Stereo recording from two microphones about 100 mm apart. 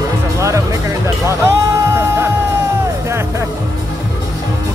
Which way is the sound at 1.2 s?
25° right (ahead or behind).